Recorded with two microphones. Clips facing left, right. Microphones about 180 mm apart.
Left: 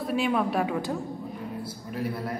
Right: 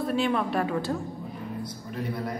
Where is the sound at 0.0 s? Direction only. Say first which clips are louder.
Even; 5° left (ahead or behind).